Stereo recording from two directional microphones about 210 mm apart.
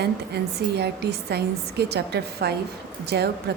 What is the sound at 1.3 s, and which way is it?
Speech, 50° right (ahead or behind).